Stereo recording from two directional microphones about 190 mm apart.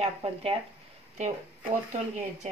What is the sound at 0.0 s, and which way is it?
Speech, 30° right (ahead or behind).